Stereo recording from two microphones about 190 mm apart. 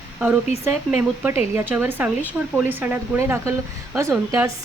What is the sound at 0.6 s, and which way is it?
Speech, 10° right (ahead or behind).